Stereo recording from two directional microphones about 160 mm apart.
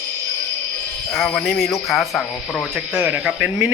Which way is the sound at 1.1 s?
Centre (ahead or behind).